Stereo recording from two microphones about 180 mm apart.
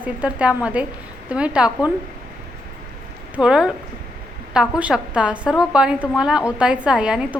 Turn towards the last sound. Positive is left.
turn(degrees=-5)  # may be behind; listen again after turning